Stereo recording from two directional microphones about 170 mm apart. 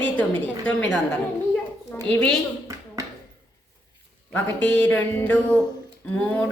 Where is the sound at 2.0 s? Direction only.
5° left (ahead or behind).